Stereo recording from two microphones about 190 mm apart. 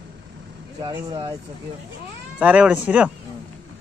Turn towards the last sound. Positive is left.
turn(degrees=-5)  # may be behind; listen again after turning